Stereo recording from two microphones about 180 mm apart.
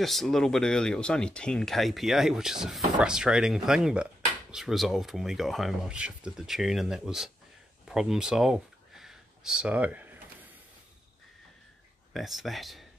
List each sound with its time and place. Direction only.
0.0 s speech: centre (ahead or behind)
7.9 s a sound: 5° right (ahead or behind)
12.1 s speech: centre (ahead or behind)